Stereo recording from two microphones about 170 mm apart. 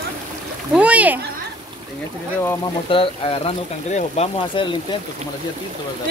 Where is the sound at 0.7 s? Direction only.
5° right (ahead or behind).